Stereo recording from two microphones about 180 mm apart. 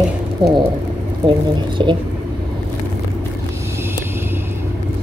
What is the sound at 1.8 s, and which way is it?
Speech, 25° right (ahead or behind).